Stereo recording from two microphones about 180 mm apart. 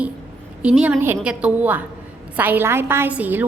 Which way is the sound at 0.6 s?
5° right (ahead or behind).